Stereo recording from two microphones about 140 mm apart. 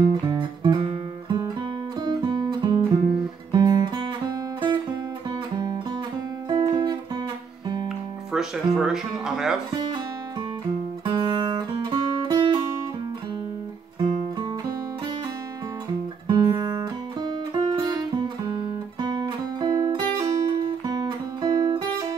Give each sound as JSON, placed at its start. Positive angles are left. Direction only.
{"t": 0.0, "sound": "music", "side_deg": -30}
{"t": 3.5, "sound": "guitar", "side_deg": -30}
{"t": 6.5, "sound": "guitar", "side_deg": -30}
{"t": 8.3, "sound": "speech", "side_deg": -5}
{"t": 11.1, "sound": "guitar", "side_deg": -30}
{"t": 16.3, "sound": "music", "side_deg": -30}
{"t": 20.6, "sound": "guitar", "side_deg": -30}